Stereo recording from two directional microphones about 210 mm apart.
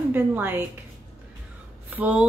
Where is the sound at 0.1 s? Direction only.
10° right (ahead or behind).